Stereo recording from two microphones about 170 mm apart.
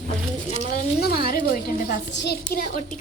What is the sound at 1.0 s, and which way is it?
A woman's voice, 65° left (ahead or behind).